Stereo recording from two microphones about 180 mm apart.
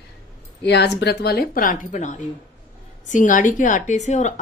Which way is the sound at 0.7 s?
70° left (ahead or behind).